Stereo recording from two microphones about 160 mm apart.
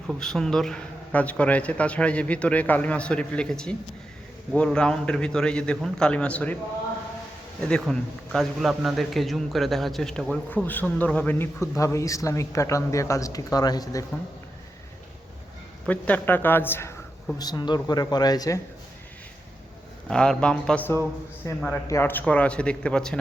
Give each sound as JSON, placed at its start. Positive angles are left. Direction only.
{"t": 0.1, "sound": "a man's voice", "side_deg": 5}
{"t": 7.7, "sound": "a man's voice", "side_deg": 0}
{"t": 15.9, "sound": "a man's voice", "side_deg": 10}
{"t": 20.1, "sound": "a man's voice", "side_deg": 5}